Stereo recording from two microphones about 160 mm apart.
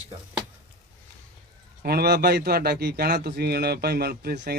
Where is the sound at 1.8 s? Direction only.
80° right.